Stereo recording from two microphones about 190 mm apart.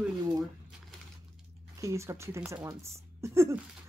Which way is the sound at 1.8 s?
15° right (ahead or behind).